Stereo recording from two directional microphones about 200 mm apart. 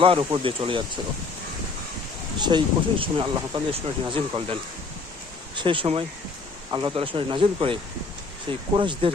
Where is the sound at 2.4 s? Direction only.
25° right (ahead or behind).